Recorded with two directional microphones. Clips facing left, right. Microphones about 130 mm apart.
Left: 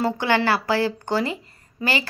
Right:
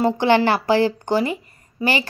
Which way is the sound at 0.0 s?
20° right (ahead or behind).